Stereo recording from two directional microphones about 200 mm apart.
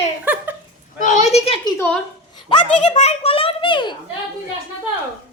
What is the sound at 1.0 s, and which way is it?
A woman's voice, 40° left (ahead or behind).